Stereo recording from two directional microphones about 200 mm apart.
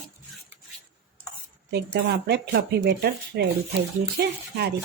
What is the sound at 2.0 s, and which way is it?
Speech, 50° right (ahead or behind).